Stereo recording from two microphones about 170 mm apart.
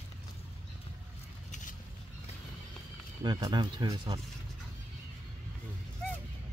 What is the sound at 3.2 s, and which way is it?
Speech, 25° right (ahead or behind).